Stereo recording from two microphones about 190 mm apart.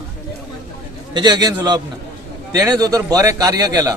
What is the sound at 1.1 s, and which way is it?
A man's voice, 20° right (ahead or behind).